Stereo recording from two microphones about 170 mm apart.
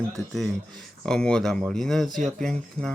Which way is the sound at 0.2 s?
Centre (ahead or behind).